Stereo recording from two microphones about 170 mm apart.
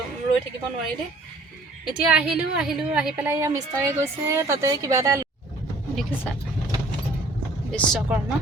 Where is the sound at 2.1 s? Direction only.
5° right (ahead or behind).